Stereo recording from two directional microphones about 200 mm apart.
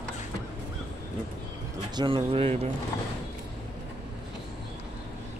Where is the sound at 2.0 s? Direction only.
25° right (ahead or behind).